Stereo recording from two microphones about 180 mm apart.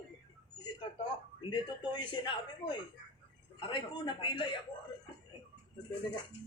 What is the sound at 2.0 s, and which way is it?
A man's voice, 25° left (ahead or behind).